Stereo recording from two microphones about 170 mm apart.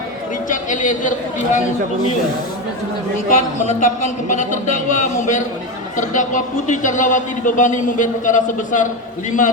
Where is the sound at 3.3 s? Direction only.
45° left (ahead or behind).